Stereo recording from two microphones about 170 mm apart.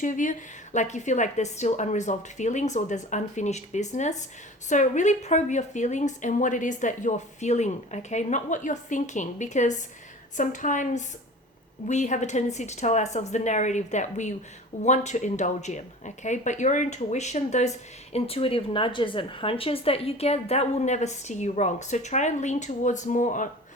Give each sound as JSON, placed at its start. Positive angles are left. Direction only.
{"t": 0.0, "sound": "speech", "side_deg": 50}